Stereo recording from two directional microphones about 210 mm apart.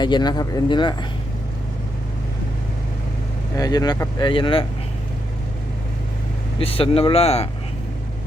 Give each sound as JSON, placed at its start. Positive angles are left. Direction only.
{"t": 0.0, "sound": "speech", "side_deg": 20}
{"t": 3.6, "sound": "speech", "side_deg": 20}
{"t": 6.6, "sound": "speech", "side_deg": 25}